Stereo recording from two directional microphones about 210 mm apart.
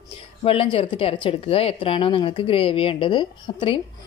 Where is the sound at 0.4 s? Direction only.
25° left (ahead or behind).